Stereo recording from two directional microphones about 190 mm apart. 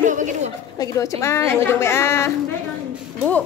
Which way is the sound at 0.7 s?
15° left (ahead or behind).